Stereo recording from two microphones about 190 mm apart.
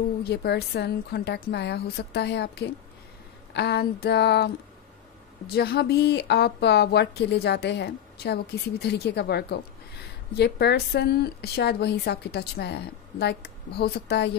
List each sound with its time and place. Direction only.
0.2 s speech: 60° left (ahead or behind)
5.5 s speech: 55° left (ahead or behind)